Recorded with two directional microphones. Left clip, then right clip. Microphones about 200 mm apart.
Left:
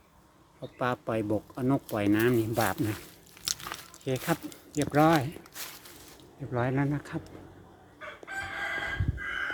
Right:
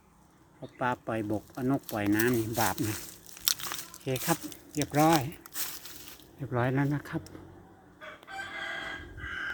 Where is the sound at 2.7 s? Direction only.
50° right (ahead or behind).